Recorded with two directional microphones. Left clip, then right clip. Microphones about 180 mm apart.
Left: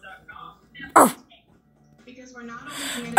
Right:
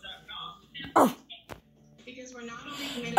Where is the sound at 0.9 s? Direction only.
10° left (ahead or behind).